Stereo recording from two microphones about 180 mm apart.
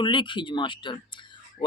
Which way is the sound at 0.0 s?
25° left (ahead or behind).